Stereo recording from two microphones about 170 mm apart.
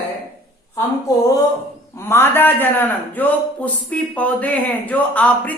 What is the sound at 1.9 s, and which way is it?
A man's voice, 15° left (ahead or behind).